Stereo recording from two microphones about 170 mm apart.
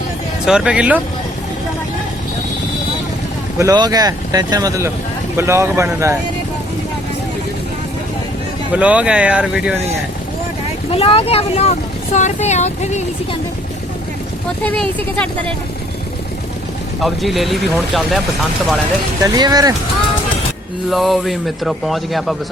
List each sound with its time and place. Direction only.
0.4 s speech: 5° right (ahead or behind)
3.6 s speech: 20° right (ahead or behind)
8.7 s speech: 10° right (ahead or behind)
10.9 s speech: 35° left (ahead or behind)
14.6 s speech: 10° left (ahead or behind)
17.0 s speech: centre (ahead or behind)
19.2 s speech: 25° right (ahead or behind)
20.9 s speech: centre (ahead or behind)